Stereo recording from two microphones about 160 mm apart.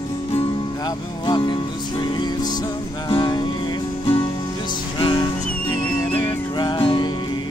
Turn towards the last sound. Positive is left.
turn(degrees=30)  # may be behind; listen again after turning